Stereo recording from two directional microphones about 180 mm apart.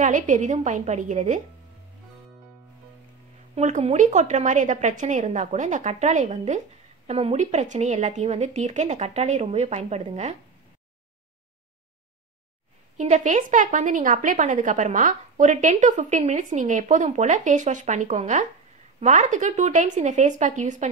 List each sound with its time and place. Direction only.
0.0 s a woman's voice: 45° right (ahead or behind)
3.5 s a woman's voice: 40° right (ahead or behind)
12.9 s a woman's voice: 45° right (ahead or behind)